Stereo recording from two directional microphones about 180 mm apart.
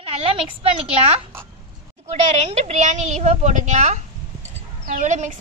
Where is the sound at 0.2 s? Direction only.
35° right (ahead or behind).